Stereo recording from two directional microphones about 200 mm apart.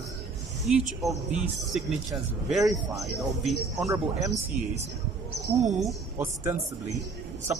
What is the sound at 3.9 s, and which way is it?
Speech, 15° right (ahead or behind).